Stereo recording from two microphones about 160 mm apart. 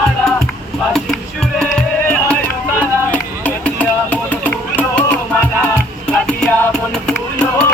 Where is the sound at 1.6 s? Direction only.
5° left (ahead or behind).